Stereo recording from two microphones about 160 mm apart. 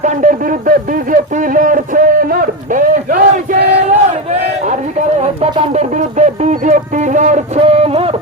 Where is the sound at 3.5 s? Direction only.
45° right (ahead or behind).